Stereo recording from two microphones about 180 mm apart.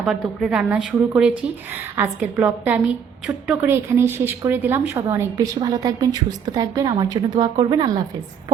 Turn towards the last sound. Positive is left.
turn(degrees=-20)  # may be behind; listen again after turning